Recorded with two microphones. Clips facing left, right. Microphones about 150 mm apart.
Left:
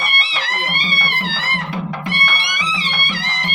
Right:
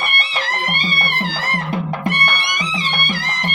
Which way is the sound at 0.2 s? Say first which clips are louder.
Right 1 dB; 45° right (ahead or behind).